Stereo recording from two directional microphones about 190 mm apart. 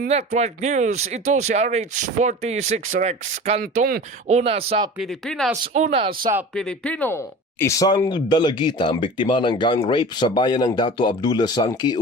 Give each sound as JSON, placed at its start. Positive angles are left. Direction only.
{"t": 0.1, "sound": "speech", "side_deg": -35}
{"t": 4.9, "sound": "speech", "side_deg": 0}
{"t": 5.7, "sound": "speech", "side_deg": -35}
{"t": 6.5, "sound": "speech", "side_deg": 5}